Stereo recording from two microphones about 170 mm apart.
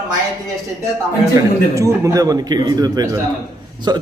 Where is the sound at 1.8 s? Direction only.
15° right (ahead or behind).